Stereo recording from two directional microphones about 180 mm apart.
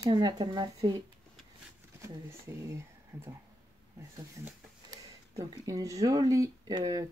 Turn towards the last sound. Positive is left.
turn(degrees=-20)  # may be behind; listen again after turning